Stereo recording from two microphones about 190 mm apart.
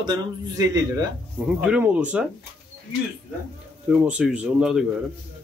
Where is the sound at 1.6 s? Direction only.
5° right (ahead or behind).